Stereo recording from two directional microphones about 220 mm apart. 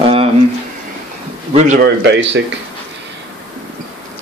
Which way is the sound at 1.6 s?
35° right (ahead or behind).